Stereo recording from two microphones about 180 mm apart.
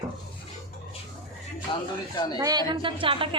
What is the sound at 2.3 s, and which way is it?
Speech, 20° right (ahead or behind).